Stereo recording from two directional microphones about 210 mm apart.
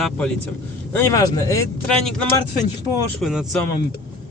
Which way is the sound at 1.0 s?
15° left (ahead or behind).